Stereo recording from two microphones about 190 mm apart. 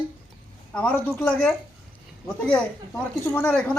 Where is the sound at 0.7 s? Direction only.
5° left (ahead or behind).